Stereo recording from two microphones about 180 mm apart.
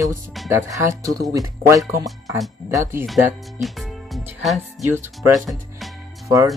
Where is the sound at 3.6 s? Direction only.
Centre (ahead or behind).